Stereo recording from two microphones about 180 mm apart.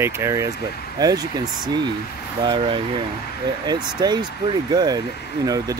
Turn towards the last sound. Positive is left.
turn(degrees=-20)  # may be behind; listen again after turning